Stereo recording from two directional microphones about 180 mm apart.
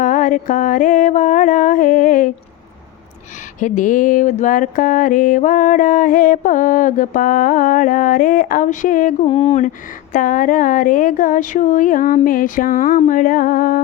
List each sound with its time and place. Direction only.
0.0 s mantra: 45° left (ahead or behind)
3.6 s mantra: 45° left (ahead or behind)
9.2 s mantra: 35° left (ahead or behind); by 13.8 s 50° left (ahead or behind)